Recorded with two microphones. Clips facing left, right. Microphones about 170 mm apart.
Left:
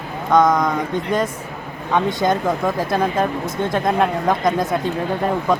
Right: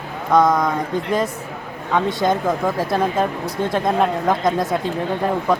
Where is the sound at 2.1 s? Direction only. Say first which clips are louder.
Even; centre (ahead or behind).